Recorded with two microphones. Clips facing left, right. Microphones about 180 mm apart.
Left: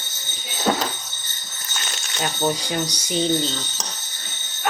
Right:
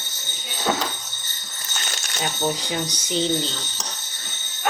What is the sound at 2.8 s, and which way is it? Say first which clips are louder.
Speech: left 1 dB; 10° left (ahead or behind).